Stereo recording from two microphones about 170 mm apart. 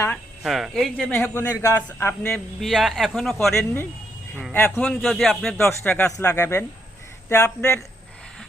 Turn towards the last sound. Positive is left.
turn(degrees=15)  # may be behind; listen again after turning